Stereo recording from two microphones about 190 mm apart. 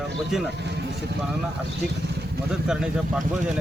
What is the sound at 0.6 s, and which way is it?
Vehicle, 65° right (ahead or behind).